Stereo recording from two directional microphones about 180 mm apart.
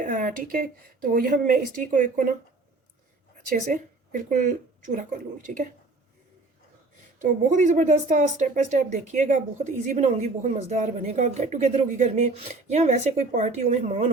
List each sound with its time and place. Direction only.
0.0 s a sound: 45° right (ahead or behind)
1.1 s speech: 50° right (ahead or behind)
3.5 s speech: 45° right (ahead or behind)
7.2 s speech: 45° right (ahead or behind)